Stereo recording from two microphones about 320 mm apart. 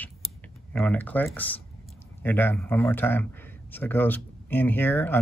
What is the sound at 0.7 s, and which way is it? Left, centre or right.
Speech, centre.